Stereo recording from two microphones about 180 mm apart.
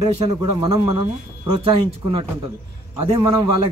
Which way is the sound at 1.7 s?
30° right (ahead or behind).